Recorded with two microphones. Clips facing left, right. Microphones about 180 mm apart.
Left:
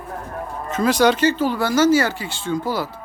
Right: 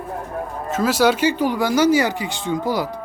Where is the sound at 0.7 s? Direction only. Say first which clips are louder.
Left 1 dB; 5° right (ahead or behind).